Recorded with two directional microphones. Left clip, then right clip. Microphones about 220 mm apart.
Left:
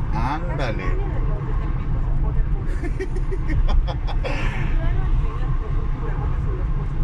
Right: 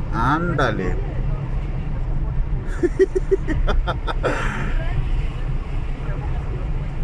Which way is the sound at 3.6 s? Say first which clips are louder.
Right 6 dB; 30° right (ahead or behind).